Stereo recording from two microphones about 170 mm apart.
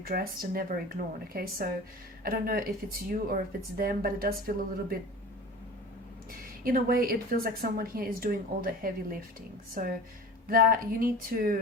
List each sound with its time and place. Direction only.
0.0 s speech: 60° right (ahead or behind)
6.7 s speech: 60° right (ahead or behind)
10.5 s speech: 60° right (ahead or behind)